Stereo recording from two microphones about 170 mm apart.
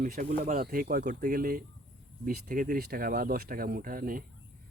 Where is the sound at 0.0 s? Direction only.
50° right (ahead or behind).